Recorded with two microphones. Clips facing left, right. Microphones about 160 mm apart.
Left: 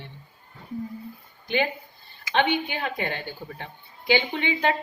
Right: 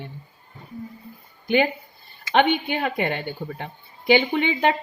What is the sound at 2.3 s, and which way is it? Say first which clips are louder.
Speech: right 4 dB; 55° right (ahead or behind).